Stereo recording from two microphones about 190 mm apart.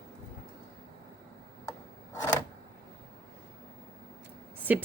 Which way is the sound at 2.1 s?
20° left (ahead or behind).